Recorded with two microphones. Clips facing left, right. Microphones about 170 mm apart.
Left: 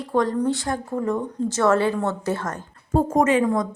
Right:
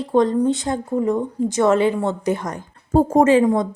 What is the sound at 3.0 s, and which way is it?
Speech, 30° right (ahead or behind).